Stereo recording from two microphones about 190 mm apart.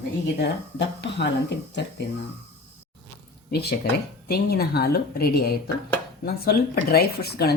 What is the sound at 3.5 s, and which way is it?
Speech, 55° left (ahead or behind).